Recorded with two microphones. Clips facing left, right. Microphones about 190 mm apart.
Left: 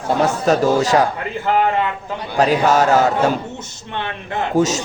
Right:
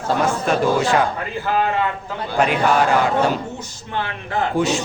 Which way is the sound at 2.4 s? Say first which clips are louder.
Left 3 dB; 40° left (ahead or behind).